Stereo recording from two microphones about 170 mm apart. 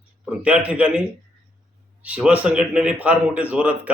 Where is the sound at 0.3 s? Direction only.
5° right (ahead or behind).